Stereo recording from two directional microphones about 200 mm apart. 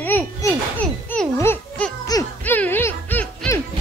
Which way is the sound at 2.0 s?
15° left (ahead or behind).